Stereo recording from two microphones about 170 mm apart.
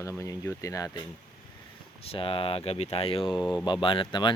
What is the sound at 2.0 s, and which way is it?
Speech, 35° left (ahead or behind).